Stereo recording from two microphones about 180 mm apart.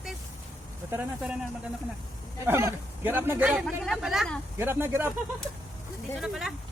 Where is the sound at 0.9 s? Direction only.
5° right (ahead or behind).